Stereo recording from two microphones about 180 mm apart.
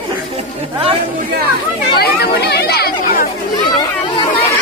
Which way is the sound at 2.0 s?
65° left (ahead or behind).